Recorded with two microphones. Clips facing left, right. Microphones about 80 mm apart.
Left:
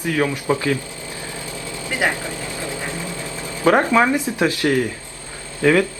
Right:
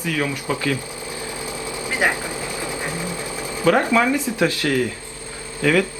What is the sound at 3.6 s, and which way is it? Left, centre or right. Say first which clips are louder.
A man's voice: left 2 dB; left.